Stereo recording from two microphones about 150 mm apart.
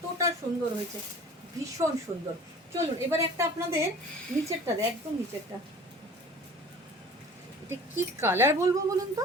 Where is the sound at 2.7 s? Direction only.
20° right (ahead or behind).